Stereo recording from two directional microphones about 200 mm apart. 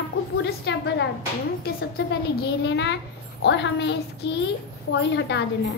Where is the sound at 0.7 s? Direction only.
60° left (ahead or behind).